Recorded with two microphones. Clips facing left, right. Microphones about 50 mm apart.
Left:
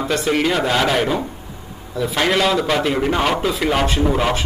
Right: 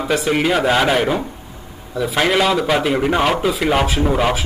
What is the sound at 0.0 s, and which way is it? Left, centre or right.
A man's voice, centre.